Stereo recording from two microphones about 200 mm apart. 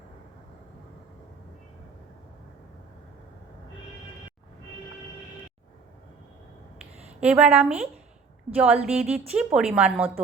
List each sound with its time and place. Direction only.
7.2 s a woman's voice: 5° right (ahead or behind)